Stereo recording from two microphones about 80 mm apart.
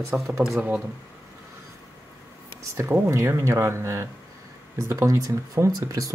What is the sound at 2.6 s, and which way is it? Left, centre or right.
Speech, right.